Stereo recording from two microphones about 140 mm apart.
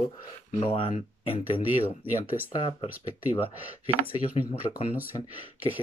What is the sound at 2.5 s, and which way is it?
Speech, 40° left (ahead or behind).